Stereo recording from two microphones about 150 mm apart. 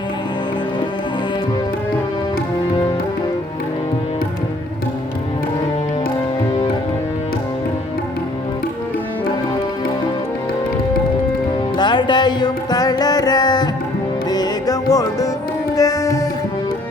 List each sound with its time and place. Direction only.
11.8 s music: 30° left (ahead or behind)